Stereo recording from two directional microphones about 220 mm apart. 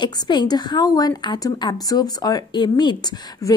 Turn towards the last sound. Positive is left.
turn(degrees=20)  # may be behind; listen again after turning